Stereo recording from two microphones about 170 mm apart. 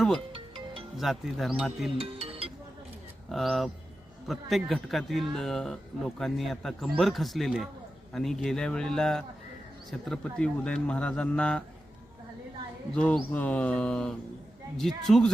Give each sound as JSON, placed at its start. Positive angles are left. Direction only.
{"t": 0.3, "sound": "music", "side_deg": -30}
{"t": 0.9, "sound": "speech", "side_deg": 0}
{"t": 2.0, "sound": "music", "side_deg": -35}
{"t": 3.2, "sound": "speech", "side_deg": 0}
{"t": 12.9, "sound": "speech", "side_deg": 5}